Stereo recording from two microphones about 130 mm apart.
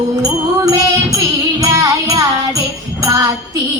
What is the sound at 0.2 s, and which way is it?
Music, 25° right (ahead or behind).